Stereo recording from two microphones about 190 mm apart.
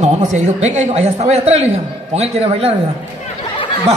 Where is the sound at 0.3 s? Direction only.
40° right (ahead or behind).